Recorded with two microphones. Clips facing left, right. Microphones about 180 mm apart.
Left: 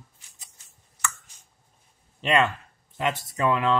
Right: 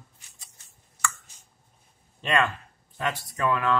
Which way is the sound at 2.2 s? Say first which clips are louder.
Left 3 dB; 20° left (ahead or behind).